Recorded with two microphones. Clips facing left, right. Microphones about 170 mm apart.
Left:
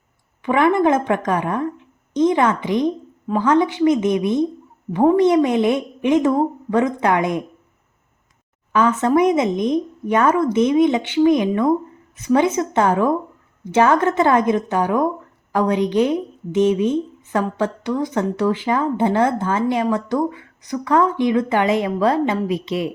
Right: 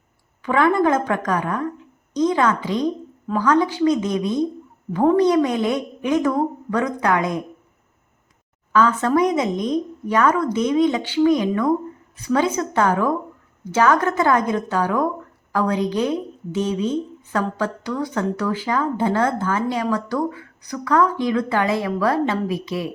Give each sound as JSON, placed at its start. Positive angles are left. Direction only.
{"t": 0.4, "sound": "speech", "side_deg": 20}
{"t": 8.7, "sound": "speech", "side_deg": 20}